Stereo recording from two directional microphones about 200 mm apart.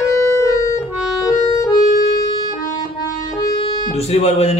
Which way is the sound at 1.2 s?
15° left (ahead or behind).